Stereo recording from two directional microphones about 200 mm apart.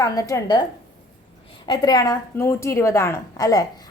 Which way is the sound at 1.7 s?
20° left (ahead or behind).